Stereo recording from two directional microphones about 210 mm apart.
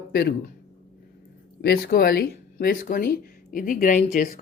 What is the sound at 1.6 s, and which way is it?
Speech, 45° left (ahead or behind).